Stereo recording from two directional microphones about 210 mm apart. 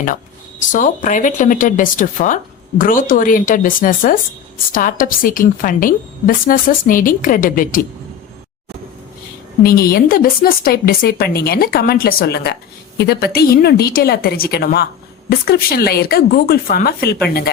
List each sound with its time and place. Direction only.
0.7 s speech: 40° left (ahead or behind)
9.6 s speech: 45° left (ahead or behind)